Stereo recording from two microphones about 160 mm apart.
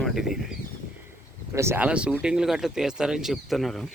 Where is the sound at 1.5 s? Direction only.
15° right (ahead or behind).